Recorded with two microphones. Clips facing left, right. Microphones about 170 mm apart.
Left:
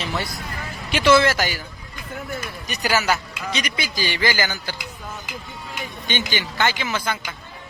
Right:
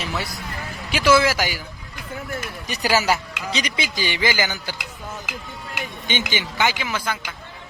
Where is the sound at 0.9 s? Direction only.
5° right (ahead or behind).